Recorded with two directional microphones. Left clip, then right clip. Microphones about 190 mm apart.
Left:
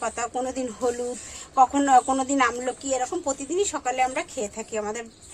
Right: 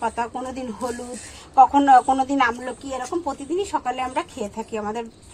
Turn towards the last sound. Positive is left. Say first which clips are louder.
# right 2 dB
turn(degrees=20)  # may be behind; listen again after turning